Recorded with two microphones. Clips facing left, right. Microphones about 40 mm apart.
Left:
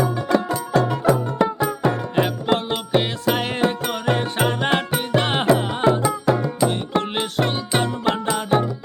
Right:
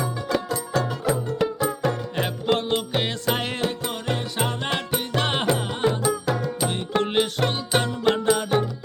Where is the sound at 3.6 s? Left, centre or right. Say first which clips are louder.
Left 6 dB; left.